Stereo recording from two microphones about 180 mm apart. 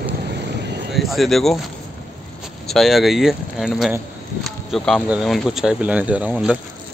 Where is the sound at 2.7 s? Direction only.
Centre (ahead or behind).